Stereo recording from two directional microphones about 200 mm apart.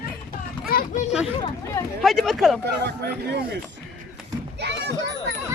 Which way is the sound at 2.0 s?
Centre (ahead or behind).